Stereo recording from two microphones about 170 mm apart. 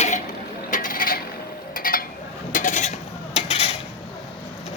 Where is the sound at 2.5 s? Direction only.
50° left (ahead or behind).